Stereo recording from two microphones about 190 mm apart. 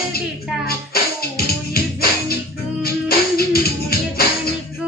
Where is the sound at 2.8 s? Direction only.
55° left (ahead or behind).